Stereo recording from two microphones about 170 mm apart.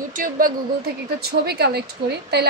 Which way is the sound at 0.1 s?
50° right (ahead or behind).